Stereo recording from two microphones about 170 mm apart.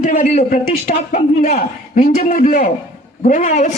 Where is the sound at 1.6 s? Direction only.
55° left (ahead or behind).